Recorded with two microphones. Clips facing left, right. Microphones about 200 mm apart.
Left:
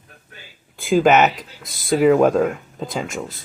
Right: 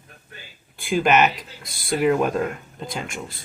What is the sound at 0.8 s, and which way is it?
Speech, 90° left.